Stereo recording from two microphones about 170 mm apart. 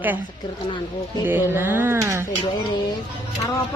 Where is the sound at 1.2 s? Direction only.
10° right (ahead or behind).